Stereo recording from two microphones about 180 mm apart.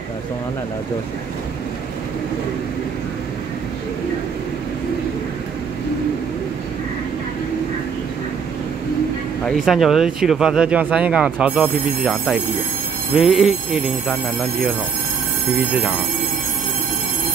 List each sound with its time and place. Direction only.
9.4 s speech: centre (ahead or behind)